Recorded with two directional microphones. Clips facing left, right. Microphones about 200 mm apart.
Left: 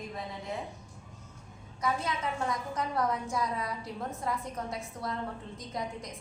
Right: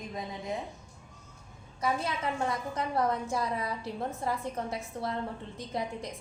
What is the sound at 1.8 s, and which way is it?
A woman's voice, 30° right (ahead or behind).